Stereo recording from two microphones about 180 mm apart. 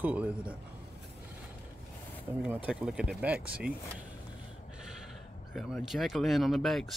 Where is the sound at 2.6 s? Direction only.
5° right (ahead or behind).